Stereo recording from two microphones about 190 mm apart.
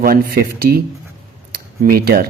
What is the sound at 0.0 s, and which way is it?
Speech, 50° right (ahead or behind).